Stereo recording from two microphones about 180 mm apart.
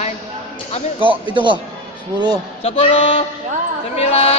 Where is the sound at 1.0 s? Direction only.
30° right (ahead or behind).